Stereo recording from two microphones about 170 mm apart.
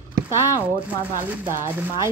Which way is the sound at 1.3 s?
10° right (ahead or behind).